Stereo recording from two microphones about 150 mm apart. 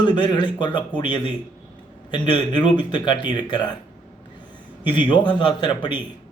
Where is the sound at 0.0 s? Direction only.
30° left (ahead or behind).